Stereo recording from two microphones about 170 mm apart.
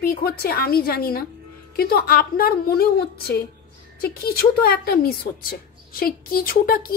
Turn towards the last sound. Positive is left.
turn(degrees=60)  # may be behind; listen again after turning